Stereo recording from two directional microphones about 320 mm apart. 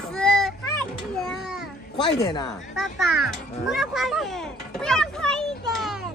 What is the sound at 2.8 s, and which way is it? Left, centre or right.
A child's voice, centre.